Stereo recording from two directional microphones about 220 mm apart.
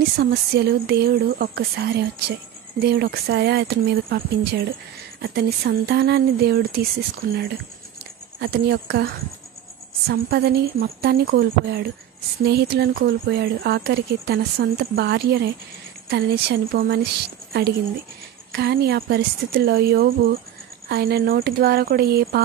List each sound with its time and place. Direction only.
0.2 s speech: 45° right (ahead or behind)
5.2 s speech: 50° right (ahead or behind)